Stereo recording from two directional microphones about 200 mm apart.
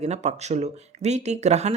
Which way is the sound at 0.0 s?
35° right (ahead or behind).